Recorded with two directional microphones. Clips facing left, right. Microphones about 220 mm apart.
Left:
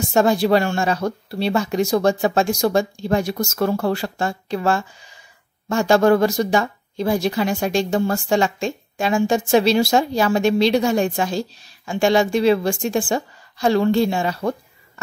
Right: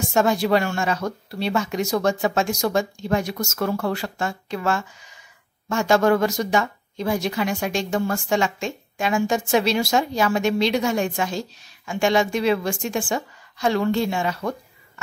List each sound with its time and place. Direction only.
0.1 s speech: 35° left (ahead or behind)